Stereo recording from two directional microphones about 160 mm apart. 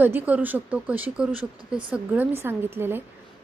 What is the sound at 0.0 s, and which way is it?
A woman's voice, 10° right (ahead or behind).